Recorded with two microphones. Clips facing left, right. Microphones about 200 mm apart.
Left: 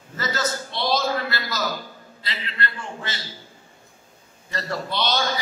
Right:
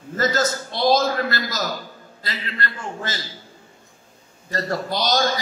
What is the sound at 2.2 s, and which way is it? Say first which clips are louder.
Speech: right 1 dB; 45° right (ahead or behind).